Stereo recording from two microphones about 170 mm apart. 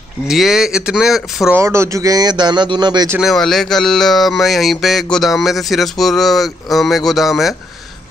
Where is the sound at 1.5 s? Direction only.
15° right (ahead or behind).